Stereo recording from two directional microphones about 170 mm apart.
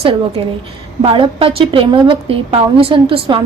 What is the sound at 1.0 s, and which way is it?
A woman's voice, 30° right (ahead or behind).